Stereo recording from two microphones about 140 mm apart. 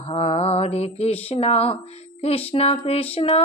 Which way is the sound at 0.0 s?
45° left (ahead or behind).